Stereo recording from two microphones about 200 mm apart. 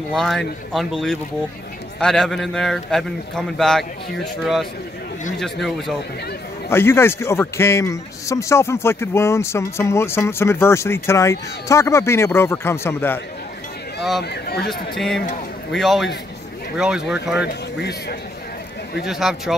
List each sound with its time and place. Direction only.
0.1 s a man's voice: centre (ahead or behind)
6.7 s a man's voice: 10° left (ahead or behind)
14.3 s speech: 55° left (ahead or behind)
14.7 s a man's voice: centre (ahead or behind)
17.7 s speech: 55° left (ahead or behind)
19.0 s a man's voice: centre (ahead or behind)